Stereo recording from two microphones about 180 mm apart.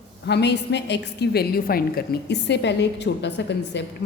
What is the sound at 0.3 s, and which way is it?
A woman's voice, 70° left (ahead or behind).